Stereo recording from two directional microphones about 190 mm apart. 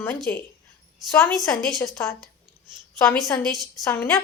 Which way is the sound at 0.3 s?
10° left (ahead or behind).